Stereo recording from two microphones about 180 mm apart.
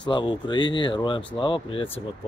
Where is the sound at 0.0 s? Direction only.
25° left (ahead or behind).